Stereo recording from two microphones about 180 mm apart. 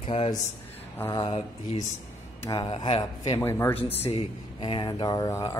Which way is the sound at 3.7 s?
35° left (ahead or behind).